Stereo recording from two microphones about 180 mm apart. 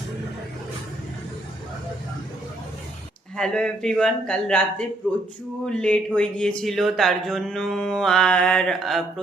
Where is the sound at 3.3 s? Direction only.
5° left (ahead or behind).